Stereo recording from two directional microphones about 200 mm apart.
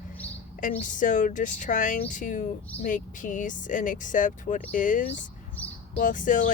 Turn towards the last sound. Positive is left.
turn(degrees=40)  # may be behind; listen again after turning